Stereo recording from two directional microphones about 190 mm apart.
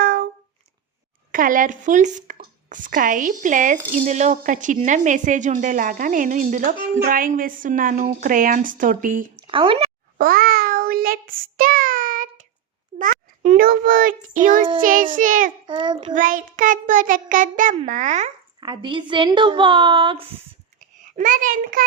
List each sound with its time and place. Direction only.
0.0 s a sound: 50° right (ahead or behind)
1.3 s a woman's voice: 45° right (ahead or behind)
9.3 s a sound: 30° right (ahead or behind)
10.2 s child singing: 50° right (ahead or behind)
13.0 s a child's voice: 40° right (ahead or behind)
15.6 s a woman's voice: 25° right (ahead or behind)
16.1 s a woman's voice: 45° right (ahead or behind)
18.6 s a woman's voice: 25° right (ahead or behind)
21.0 s a child's voice: 45° right (ahead or behind)